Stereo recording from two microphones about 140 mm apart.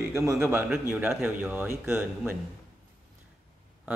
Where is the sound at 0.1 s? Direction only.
20° right (ahead or behind).